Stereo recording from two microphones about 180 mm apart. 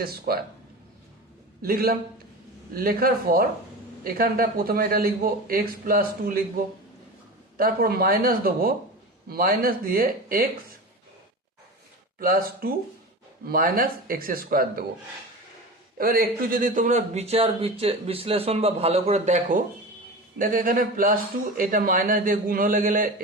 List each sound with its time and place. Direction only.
0.3 s a man's voice: 55° right (ahead or behind)
1.6 s a man's voice: 55° right (ahead or behind)
7.5 s a man's voice: 55° right (ahead or behind)
12.2 s a man's voice: 55° right (ahead or behind)
16.0 s a man's voice: 55° right (ahead or behind)